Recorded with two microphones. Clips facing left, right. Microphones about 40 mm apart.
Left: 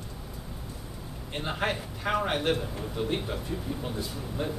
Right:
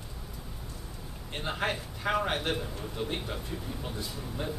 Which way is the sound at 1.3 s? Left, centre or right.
Centre.